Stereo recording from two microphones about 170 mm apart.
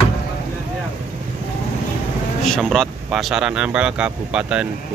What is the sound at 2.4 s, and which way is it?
Speech, 5° left (ahead or behind).